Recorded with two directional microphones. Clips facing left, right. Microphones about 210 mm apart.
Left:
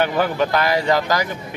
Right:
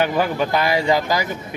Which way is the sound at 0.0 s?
10° right (ahead or behind).